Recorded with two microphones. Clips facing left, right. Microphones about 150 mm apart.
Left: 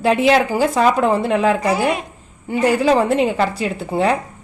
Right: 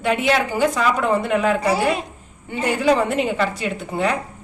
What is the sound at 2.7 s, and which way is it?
A woman's voice, 35° left (ahead or behind).